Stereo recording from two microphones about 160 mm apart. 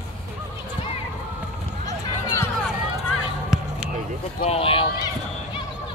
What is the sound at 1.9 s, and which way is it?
Run, 20° left (ahead or behind).